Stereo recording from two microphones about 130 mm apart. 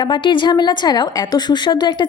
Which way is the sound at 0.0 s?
35° left (ahead or behind).